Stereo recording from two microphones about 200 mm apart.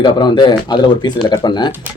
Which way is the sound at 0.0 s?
25° left (ahead or behind).